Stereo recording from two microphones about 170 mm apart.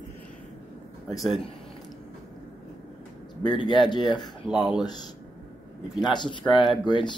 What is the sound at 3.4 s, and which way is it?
Speech, 25° left (ahead or behind).